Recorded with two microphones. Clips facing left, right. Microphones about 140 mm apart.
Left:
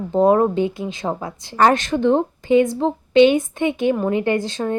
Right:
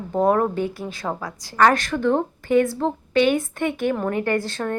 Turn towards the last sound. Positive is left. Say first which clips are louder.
# left 3 dB
turn(degrees=15)  # may be behind; listen again after turning